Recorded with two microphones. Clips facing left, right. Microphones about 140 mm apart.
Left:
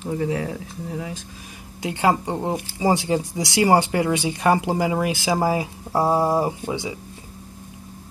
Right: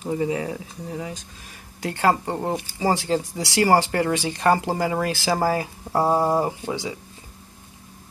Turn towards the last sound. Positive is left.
turn(degrees=15)  # may be behind; listen again after turning